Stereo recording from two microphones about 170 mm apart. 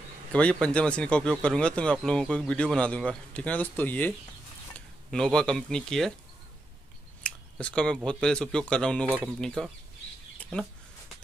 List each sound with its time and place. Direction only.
0.3 s speech: 5° left (ahead or behind)
7.2 s speech: 5° left (ahead or behind)